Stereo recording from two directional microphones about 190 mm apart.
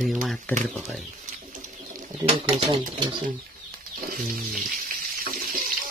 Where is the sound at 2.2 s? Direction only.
25° right (ahead or behind).